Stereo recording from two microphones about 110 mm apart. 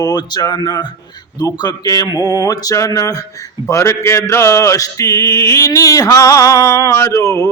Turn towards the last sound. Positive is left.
turn(degrees=30)  # may be behind; listen again after turning